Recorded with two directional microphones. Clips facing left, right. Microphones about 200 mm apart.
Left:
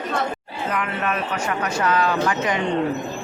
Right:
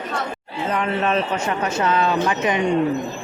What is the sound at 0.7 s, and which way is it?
A man's voice, 30° right (ahead or behind).